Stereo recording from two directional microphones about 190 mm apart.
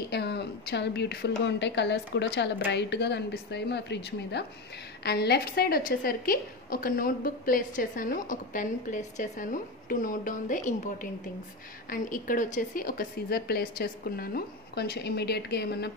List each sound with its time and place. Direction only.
0.1 s a woman's voice: 60° left (ahead or behind)